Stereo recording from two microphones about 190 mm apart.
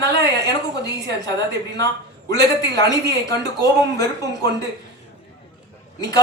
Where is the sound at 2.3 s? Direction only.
20° left (ahead or behind).